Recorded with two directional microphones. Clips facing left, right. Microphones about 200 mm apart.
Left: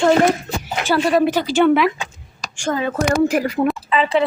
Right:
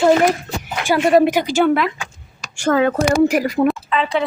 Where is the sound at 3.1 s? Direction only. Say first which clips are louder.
Right 2 dB; 10° right (ahead or behind).